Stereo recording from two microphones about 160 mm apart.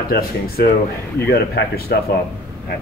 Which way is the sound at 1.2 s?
85° left.